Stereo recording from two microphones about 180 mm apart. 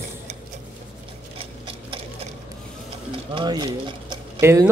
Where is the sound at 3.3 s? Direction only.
25° right (ahead or behind).